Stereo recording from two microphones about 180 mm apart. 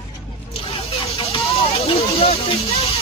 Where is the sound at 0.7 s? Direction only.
30° left (ahead or behind).